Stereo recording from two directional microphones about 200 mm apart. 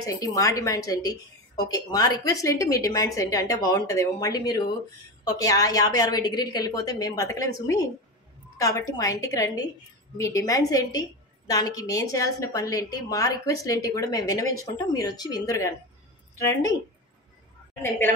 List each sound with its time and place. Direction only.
0.0 s a woman's voice: 15° left (ahead or behind)
17.8 s a woman's voice: 10° left (ahead or behind)